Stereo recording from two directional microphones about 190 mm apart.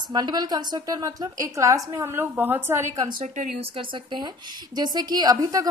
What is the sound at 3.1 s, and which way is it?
Speech, 40° right (ahead or behind).